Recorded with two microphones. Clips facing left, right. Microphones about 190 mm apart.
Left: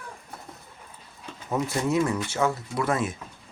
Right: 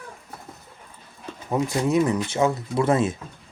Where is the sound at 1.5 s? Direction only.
15° right (ahead or behind).